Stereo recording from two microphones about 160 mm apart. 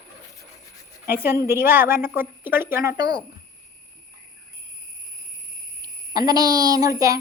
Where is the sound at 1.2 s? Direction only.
15° right (ahead or behind).